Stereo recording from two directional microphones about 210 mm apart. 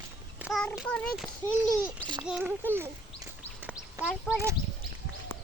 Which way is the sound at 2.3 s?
5° right (ahead or behind).